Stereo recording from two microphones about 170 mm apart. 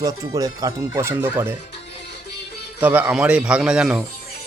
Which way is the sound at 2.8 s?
10° right (ahead or behind).